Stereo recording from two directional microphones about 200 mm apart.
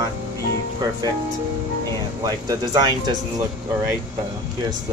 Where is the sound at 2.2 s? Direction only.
20° right (ahead or behind).